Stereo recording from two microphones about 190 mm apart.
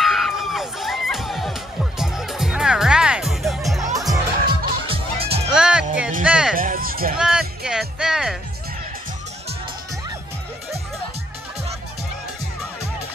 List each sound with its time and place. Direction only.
0.0 s music: centre (ahead or behind)
3.9 s music: 20° right (ahead or behind)
4.8 s music: 30° right (ahead or behind)
5.5 s music: 5° right (ahead or behind)
6.5 s music: 45° right (ahead or behind)
7.2 s music: 5° right (ahead or behind)